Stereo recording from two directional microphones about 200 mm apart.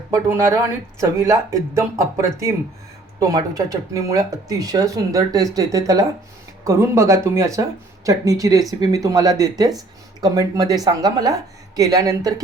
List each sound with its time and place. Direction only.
0.1 s a woman's voice: 15° right (ahead or behind)